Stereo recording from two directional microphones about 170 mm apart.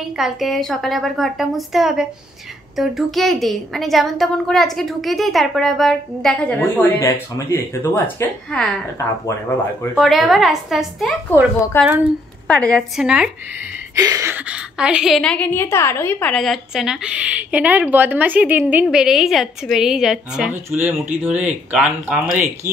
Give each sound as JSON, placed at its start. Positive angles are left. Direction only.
{"t": 0.2, "sound": "a woman's voice", "side_deg": 0}
{"t": 6.6, "sound": "speech", "side_deg": 15}
{"t": 9.9, "sound": "a woman's voice", "side_deg": 0}
{"t": 11.2, "sound": "a woman's voice", "side_deg": 10}
{"t": 13.9, "sound": "a woman's voice", "side_deg": -20}